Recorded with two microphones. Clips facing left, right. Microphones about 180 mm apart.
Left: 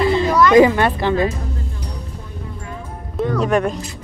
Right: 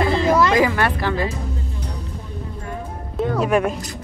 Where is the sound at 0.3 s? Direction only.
30° right (ahead or behind).